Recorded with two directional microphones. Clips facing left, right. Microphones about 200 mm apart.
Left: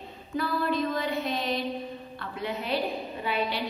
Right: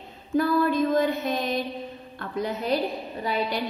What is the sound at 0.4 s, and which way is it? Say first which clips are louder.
A woman's voice: right 6 dB; 45° right (ahead or behind).